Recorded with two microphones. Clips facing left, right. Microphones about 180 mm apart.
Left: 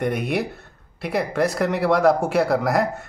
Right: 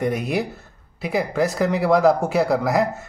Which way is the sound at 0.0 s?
Centre (ahead or behind).